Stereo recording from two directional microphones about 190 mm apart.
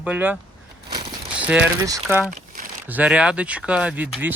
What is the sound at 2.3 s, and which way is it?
Crumpling, 45° right (ahead or behind).